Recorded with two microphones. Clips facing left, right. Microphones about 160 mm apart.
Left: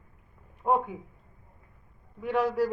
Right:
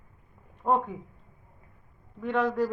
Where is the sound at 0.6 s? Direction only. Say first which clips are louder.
Even; 5° left (ahead or behind).